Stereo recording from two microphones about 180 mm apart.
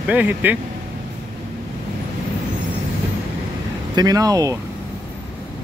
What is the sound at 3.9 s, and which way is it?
Speech, 20° right (ahead or behind).